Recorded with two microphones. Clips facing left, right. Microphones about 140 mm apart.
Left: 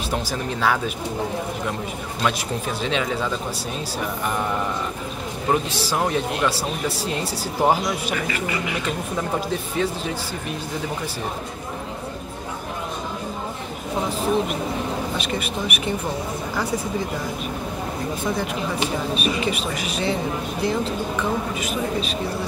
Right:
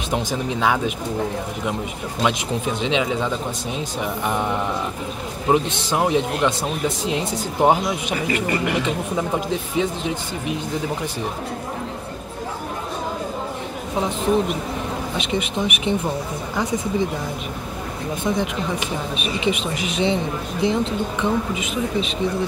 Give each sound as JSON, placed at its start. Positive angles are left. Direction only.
{"t": 0.1, "sound": "speech", "side_deg": -15}
{"t": 2.2, "sound": "speech", "side_deg": -15}
{"t": 8.5, "sound": "speech", "side_deg": -60}
{"t": 8.8, "sound": "speech", "side_deg": -15}
{"t": 15.1, "sound": "speech", "side_deg": -20}
{"t": 18.2, "sound": "speech", "side_deg": -20}